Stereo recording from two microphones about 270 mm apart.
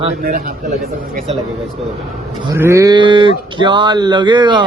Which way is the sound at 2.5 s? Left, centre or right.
Centre.